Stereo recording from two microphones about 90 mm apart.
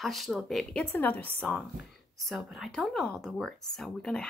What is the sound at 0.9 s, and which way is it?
Speech, 20° left (ahead or behind).